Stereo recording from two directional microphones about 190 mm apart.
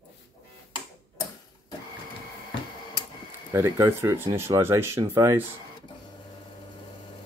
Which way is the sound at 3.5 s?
15° right (ahead or behind).